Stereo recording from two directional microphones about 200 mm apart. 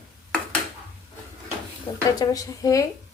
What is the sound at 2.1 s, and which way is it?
Speech, 15° left (ahead or behind).